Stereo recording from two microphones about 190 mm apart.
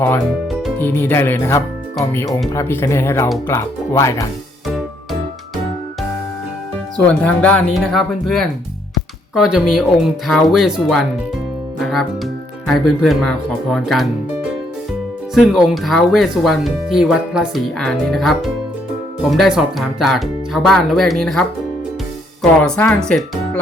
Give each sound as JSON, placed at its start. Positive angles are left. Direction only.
{"t": 0.8, "sound": "speech", "side_deg": 10}
{"t": 7.3, "sound": "speech", "side_deg": 5}
{"t": 15.4, "sound": "speech", "side_deg": 0}
{"t": 22.4, "sound": "speech", "side_deg": 5}